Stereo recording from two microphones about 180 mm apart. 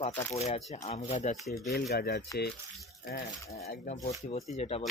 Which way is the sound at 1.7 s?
60° left (ahead or behind).